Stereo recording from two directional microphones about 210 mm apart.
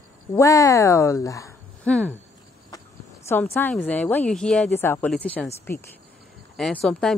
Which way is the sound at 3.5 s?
10° left (ahead or behind).